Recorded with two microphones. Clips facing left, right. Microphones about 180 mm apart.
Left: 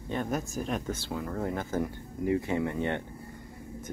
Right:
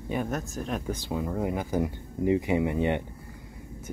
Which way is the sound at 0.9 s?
15° right (ahead or behind).